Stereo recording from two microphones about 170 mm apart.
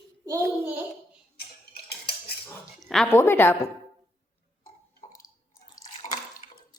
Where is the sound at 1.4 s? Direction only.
65° left (ahead or behind).